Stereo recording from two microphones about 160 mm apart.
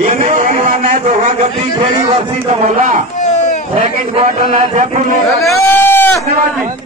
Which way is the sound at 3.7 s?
60° right (ahead or behind).